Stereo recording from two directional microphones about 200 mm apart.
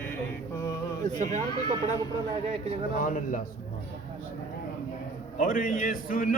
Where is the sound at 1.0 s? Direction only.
35° right (ahead or behind).